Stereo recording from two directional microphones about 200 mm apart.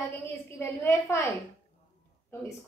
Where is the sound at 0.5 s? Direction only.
15° left (ahead or behind).